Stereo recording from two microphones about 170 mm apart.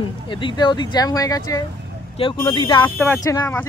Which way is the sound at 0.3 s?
30° left (ahead or behind).